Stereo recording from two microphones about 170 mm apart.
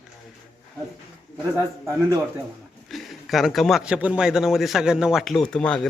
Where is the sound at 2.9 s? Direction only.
Centre (ahead or behind).